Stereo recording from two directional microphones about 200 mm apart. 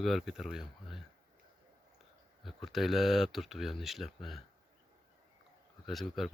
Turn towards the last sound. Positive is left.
turn(degrees=0)  # may be behind; listen again after turning